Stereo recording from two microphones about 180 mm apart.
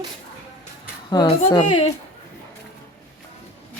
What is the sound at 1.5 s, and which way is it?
Speech, 30° left (ahead or behind).